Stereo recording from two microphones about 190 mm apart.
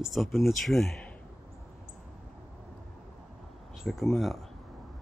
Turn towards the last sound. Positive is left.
turn(degrees=0)  # may be behind; listen again after turning